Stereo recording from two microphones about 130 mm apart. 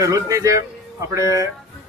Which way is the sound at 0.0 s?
25° right (ahead or behind).